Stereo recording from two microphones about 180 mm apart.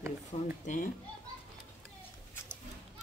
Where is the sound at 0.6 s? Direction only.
45° left (ahead or behind).